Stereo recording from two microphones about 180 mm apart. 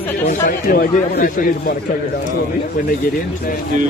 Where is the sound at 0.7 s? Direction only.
50° left (ahead or behind).